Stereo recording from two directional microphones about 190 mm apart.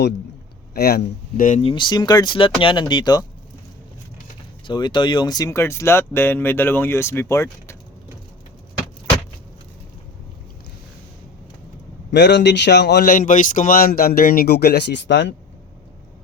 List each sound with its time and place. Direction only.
0.7 s speech: 55° left (ahead or behind)
1.6 s speech: 25° left (ahead or behind)
4.6 s speech: 25° left (ahead or behind)
12.1 s speech: 65° left (ahead or behind)